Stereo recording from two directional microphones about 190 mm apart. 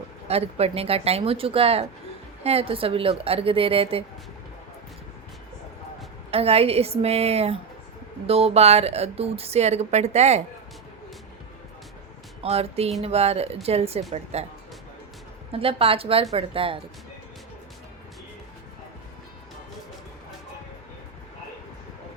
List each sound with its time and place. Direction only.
0.3 s a woman's voice: 30° right (ahead or behind)
6.3 s a woman's voice: 30° right (ahead or behind)
12.4 s a woman's voice: 30° right (ahead or behind)
15.5 s a woman's voice: 30° right (ahead or behind)